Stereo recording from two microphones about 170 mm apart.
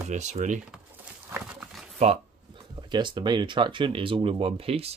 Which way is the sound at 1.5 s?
5° right (ahead or behind).